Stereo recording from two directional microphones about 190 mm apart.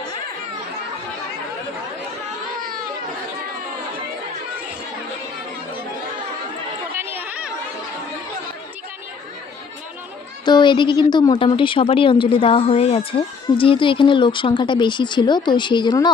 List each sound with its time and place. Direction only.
6.9 s chatter: 10° right (ahead or behind)
10.4 s a woman's voice: 25° left (ahead or behind)